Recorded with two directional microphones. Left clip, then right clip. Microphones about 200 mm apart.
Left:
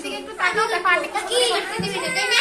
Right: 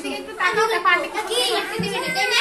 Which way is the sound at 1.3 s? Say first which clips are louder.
Left 2 dB; 30° left (ahead or behind).